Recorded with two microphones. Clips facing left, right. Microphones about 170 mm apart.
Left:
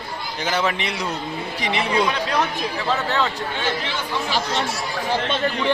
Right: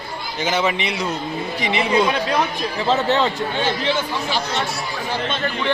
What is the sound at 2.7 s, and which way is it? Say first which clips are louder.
Speech: right 5 dB; 20° right (ahead or behind).